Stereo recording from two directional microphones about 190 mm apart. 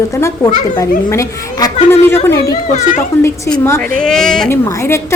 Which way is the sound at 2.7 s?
40° left (ahead or behind).